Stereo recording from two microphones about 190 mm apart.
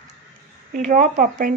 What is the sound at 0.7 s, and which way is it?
Speech, 40° right (ahead or behind).